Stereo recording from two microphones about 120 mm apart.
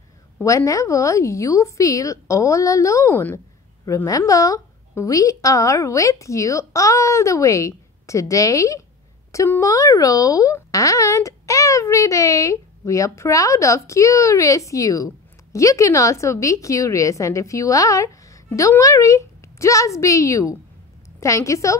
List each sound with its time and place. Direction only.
0.4 s speech: 25° left (ahead or behind)